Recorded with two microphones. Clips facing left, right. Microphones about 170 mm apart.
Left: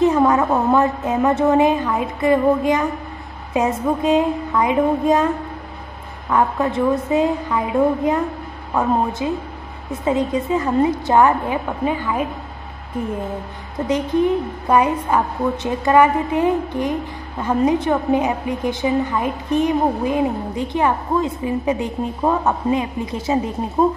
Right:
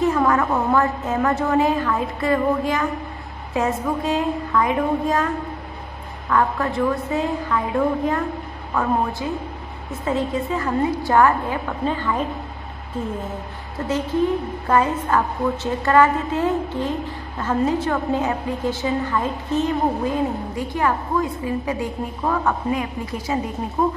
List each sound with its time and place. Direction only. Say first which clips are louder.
0.0 s a woman's voice: left 4 dB; 20° left (ahead or behind)
6.3 s a woman's voice: left 2 dB; 20° left (ahead or behind)
9.2 s a woman's voice: left 3 dB; 20° left (ahead or behind)
13.7 s a woman's voice: left 3 dB; 15° left (ahead or behind)